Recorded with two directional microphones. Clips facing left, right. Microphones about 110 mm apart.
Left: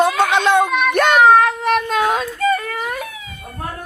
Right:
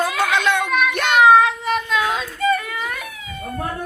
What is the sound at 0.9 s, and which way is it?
Child singing, 45° left (ahead or behind).